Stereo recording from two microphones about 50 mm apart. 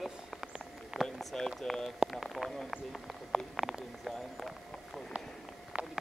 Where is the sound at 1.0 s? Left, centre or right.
Centre.